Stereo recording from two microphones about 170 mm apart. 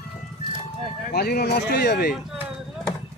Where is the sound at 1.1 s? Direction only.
70° left (ahead or behind).